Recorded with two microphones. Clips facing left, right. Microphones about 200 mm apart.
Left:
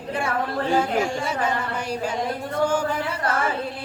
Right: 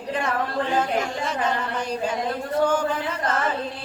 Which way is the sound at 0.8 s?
10° left (ahead or behind).